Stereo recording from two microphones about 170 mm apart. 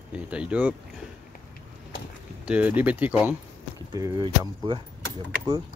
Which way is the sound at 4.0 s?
25° right (ahead or behind).